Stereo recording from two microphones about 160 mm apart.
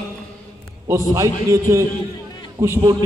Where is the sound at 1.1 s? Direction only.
20° right (ahead or behind).